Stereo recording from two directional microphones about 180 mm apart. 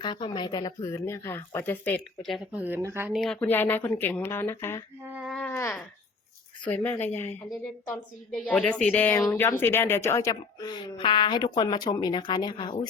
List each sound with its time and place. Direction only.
0.0 s speech: 25° left (ahead or behind); by 3.2 s 15° right (ahead or behind)
3.4 s speech: 10° left (ahead or behind)
5.0 s a sound: 10° right (ahead or behind)
5.3 s speech: 10° left (ahead or behind); by 12.8 s 25° left (ahead or behind)